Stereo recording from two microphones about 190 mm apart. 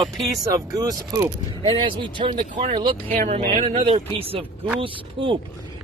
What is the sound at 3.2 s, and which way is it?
Speech, 35° right (ahead or behind).